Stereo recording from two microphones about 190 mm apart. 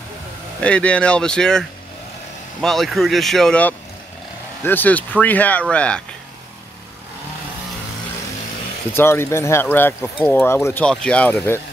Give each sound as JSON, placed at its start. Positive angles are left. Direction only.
{"t": 0.6, "sound": "speech", "side_deg": 5}
{"t": 8.9, "sound": "speech", "side_deg": 10}